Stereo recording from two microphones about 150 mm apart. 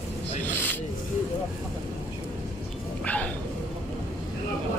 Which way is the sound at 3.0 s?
10° left (ahead or behind).